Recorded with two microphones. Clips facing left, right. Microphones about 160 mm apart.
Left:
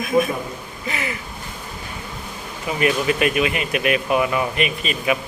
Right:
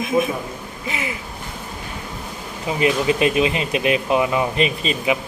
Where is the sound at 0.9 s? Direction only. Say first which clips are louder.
Even; 15° right (ahead or behind).